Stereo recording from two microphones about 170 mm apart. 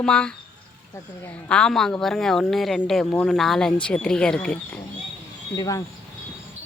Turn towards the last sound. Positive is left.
turn(degrees=20)  # may be behind; listen again after turning